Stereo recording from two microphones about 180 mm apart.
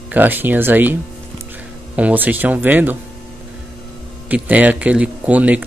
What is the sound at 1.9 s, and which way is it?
Speech, 10° right (ahead or behind).